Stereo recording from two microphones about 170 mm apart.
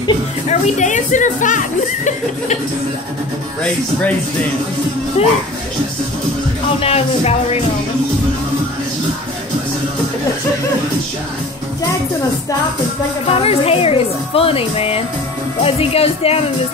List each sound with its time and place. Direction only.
0.5 s speech: 45° left (ahead or behind)
5.2 s speech: 35° left (ahead or behind)
6.8 s speech: 35° left (ahead or behind)
13.3 s speech: 35° left (ahead or behind)